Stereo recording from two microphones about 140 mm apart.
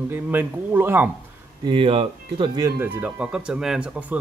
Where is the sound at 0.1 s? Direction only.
15° right (ahead or behind).